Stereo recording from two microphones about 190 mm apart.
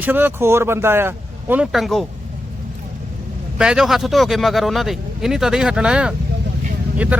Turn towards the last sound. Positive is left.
turn(degrees=-10)  # may be behind; listen again after turning